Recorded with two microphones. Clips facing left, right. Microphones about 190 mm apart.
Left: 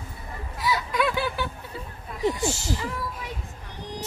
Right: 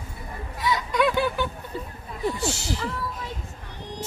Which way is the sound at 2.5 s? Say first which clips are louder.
Even; 70° right (ahead or behind).